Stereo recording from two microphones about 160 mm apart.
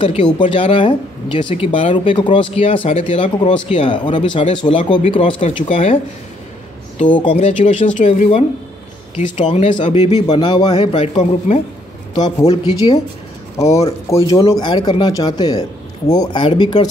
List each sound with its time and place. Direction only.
0.0 s speech: 30° left (ahead or behind)
2.0 s speech: 30° left (ahead or behind)
7.2 s speech: 30° left (ahead or behind)
7.4 s speech: 50° left (ahead or behind)
10.1 s speech: 25° left (ahead or behind); by 11.6 s 45° left (ahead or behind)
12.1 s a man's voice: 25° left (ahead or behind)
12.4 s speech: 35° left (ahead or behind)
13.7 s speech: 20° left (ahead or behind)